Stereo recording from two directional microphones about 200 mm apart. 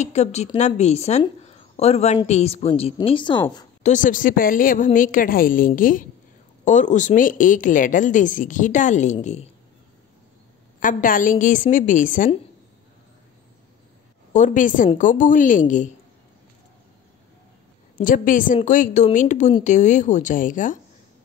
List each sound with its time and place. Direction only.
0.0 s a woman's voice: 35° left (ahead or behind)
3.8 s a woman's voice: 40° left (ahead or behind)
10.8 s speech: 40° left (ahead or behind)
14.3 s speech: 40° left (ahead or behind)
17.9 s a woman's voice: 45° left (ahead or behind)